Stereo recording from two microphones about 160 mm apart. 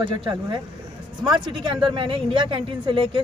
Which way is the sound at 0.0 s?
30° right (ahead or behind).